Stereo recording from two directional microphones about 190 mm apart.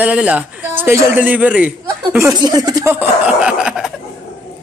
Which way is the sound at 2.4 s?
20° right (ahead or behind).